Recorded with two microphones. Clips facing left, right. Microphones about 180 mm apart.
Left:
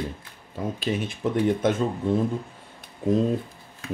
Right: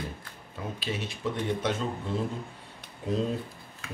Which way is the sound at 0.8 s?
50° left (ahead or behind).